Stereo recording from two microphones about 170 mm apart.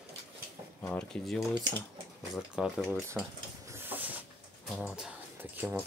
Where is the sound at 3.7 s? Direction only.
10° right (ahead or behind).